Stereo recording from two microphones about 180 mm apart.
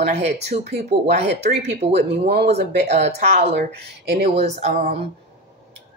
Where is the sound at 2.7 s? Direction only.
35° right (ahead or behind).